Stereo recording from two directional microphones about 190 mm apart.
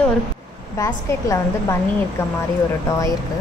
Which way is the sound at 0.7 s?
20° left (ahead or behind).